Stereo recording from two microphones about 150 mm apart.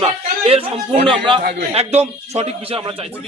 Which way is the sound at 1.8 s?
45° right (ahead or behind).